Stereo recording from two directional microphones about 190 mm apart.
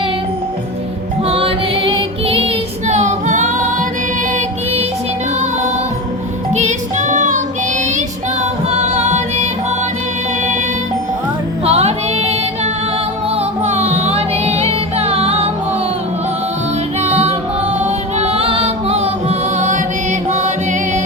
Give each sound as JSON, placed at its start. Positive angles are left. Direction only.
{"t": 1.3, "sound": "music", "side_deg": -30}
{"t": 6.5, "sound": "music", "side_deg": -35}
{"t": 8.7, "sound": "music", "side_deg": -35}
{"t": 11.6, "sound": "music", "side_deg": -30}
{"t": 13.7, "sound": "music", "side_deg": -35}
{"t": 17.0, "sound": "music", "side_deg": -35}